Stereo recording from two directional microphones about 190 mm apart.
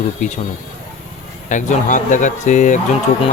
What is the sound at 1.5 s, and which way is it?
Speech, 40° left (ahead or behind).